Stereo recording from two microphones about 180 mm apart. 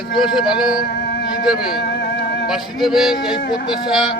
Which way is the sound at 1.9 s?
70° left (ahead or behind).